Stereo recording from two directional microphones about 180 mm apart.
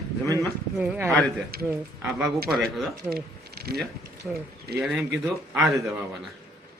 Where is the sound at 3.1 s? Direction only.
60° right (ahead or behind).